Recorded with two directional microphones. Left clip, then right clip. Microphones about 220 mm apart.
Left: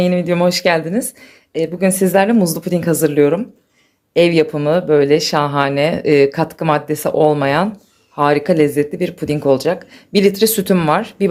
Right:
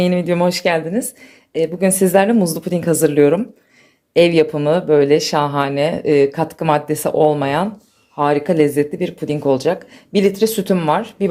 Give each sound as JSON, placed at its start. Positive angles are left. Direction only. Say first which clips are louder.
{"t": 0.0, "sound": "speech", "louder": "left 1 dB", "side_deg": 0}